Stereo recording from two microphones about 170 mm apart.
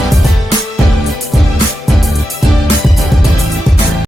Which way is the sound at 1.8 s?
Centre (ahead or behind).